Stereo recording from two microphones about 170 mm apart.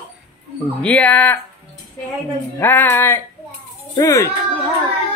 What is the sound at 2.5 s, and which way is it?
Music, 10° left (ahead or behind).